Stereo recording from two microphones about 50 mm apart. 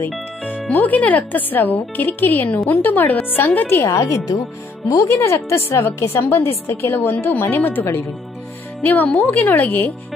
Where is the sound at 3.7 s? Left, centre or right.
Left.